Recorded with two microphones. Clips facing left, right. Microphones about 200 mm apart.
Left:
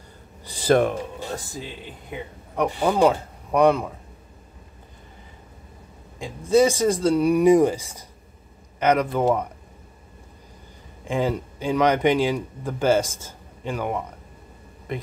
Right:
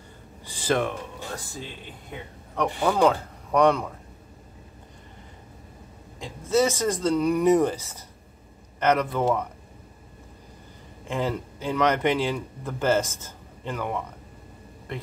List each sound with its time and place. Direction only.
0.5 s a sound: 40° left (ahead or behind)
2.0 s speech: 10° left (ahead or behind)
6.1 s speech: 15° left (ahead or behind)
9.1 s speech: 25° left (ahead or behind)
11.1 s speech: 15° left (ahead or behind)